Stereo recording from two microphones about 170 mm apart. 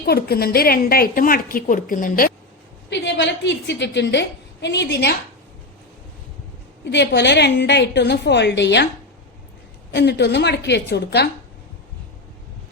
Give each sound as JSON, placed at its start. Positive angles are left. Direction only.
{"t": 0.0, "sound": "a woman's voice", "side_deg": 65}
{"t": 2.9, "sound": "a woman's voice", "side_deg": 90}
{"t": 6.8, "sound": "a woman's voice", "side_deg": 90}
{"t": 9.9, "sound": "a woman's voice", "side_deg": 85}